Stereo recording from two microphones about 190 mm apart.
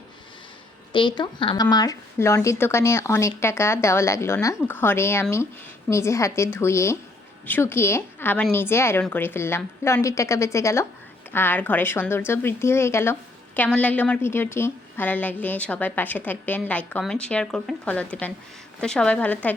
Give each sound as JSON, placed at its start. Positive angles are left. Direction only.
{"t": 0.9, "sound": "a woman's voice", "side_deg": 25}